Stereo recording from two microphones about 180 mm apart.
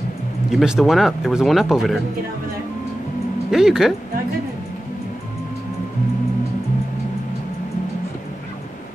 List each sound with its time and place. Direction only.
0.5 s speech: 5° right (ahead or behind)
3.4 s speech: 5° right (ahead or behind)